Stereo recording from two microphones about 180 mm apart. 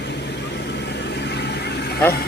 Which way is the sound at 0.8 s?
70° left (ahead or behind).